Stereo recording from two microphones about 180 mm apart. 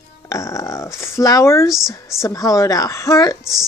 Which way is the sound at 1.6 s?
Centre (ahead or behind).